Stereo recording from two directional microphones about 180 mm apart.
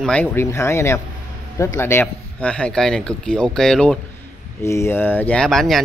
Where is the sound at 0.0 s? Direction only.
10° left (ahead or behind).